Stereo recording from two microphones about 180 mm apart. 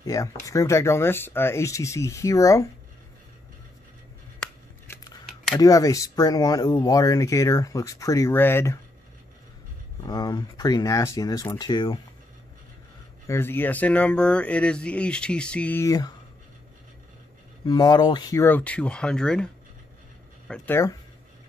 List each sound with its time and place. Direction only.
0.0 s speech: 20° left (ahead or behind)
5.6 s speech: 20° left (ahead or behind)
10.0 s speech: 20° left (ahead or behind)
13.3 s speech: 10° left (ahead or behind)
17.6 s speech: 20° left (ahead or behind)